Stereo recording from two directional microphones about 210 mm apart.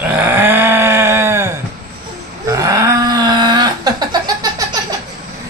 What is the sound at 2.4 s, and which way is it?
Wail, 15° right (ahead or behind).